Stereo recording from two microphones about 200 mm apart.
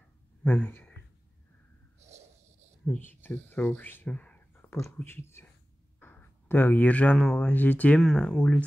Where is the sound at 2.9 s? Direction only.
10° left (ahead or behind).